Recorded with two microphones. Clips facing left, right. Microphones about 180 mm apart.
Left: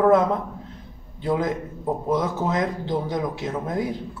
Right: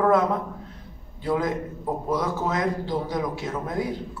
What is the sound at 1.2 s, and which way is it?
Speech, 20° left (ahead or behind).